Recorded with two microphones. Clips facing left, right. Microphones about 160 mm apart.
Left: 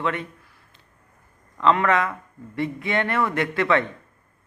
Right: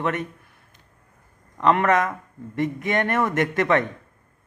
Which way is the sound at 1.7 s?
45° right (ahead or behind).